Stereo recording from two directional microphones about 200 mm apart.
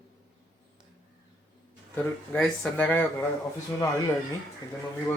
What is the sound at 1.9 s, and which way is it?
Speech, 5° left (ahead or behind).